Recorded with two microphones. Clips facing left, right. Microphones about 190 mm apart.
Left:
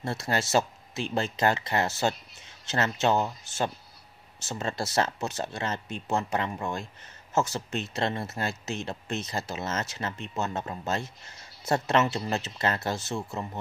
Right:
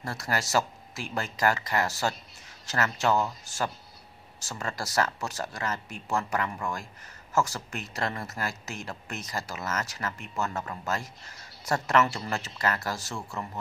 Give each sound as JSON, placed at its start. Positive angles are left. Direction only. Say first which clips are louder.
{"t": 0.0, "sound": "speech", "louder": "left 2 dB", "side_deg": 25}